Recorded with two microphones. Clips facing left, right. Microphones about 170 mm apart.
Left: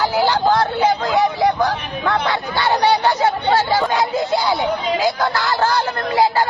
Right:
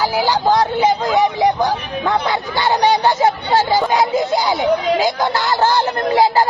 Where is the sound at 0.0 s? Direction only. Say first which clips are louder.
Even; 10° right (ahead or behind).